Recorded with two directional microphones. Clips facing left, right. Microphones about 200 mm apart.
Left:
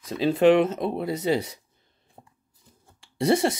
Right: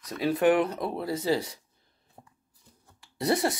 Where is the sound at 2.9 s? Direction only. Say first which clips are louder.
Left 5 dB; 25° left (ahead or behind).